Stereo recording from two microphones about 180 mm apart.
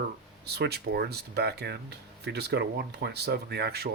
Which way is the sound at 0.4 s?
65° right (ahead or behind).